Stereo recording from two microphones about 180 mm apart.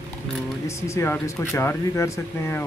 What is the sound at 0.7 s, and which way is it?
Speech, 15° left (ahead or behind).